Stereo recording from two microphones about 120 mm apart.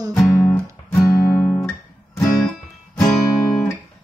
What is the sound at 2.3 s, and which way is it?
Music, 5° left (ahead or behind).